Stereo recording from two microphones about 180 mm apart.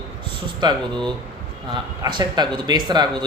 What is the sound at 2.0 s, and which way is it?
Speech, 25° right (ahead or behind).